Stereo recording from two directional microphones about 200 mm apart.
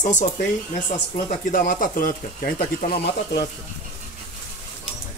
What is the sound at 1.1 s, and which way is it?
Speech, 45° left (ahead or behind).